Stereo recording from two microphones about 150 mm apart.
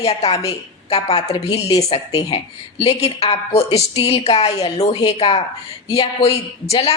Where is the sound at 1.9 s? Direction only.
45° left (ahead or behind).